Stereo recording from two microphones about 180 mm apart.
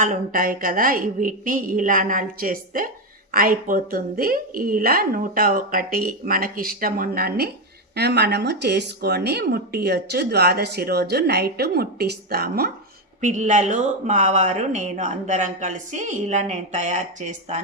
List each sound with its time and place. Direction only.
0.0 s a woman's voice: 45° right (ahead or behind)
13.2 s speech: 40° right (ahead or behind)